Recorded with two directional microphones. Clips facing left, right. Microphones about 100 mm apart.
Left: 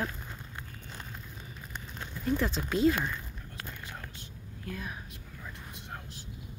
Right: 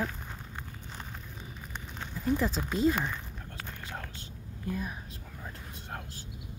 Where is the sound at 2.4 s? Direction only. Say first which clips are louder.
Left 1 dB; 5° right (ahead or behind).